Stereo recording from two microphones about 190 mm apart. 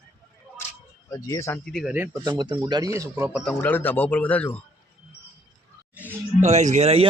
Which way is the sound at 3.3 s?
5° left (ahead or behind).